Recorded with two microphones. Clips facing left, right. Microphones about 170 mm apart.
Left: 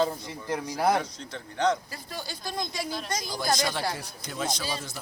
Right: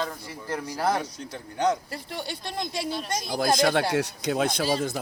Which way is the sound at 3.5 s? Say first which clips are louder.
Right 7 dB; 60° right (ahead or behind).